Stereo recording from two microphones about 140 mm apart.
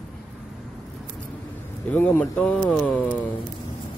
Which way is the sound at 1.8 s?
15° left (ahead or behind).